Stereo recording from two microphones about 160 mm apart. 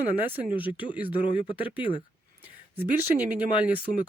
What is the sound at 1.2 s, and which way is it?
Speech, 30° left (ahead or behind).